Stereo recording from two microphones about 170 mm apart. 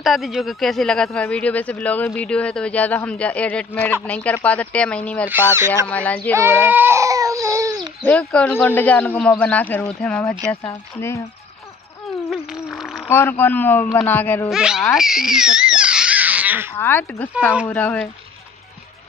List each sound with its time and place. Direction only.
0.0 s speech: centre (ahead or behind)
5.3 s speech: 15° right (ahead or behind)
5.9 s speech: 10° left (ahead or behind)
6.3 s goat: 15° right (ahead or behind)
8.0 s speech: 10° left (ahead or behind)
12.3 s insect: centre (ahead or behind)
13.1 s speech: 15° left (ahead or behind)
14.5 s speech: 5° right (ahead or behind)
15.0 s a sound: 5° right (ahead or behind)
16.7 s speech: 15° left (ahead or behind)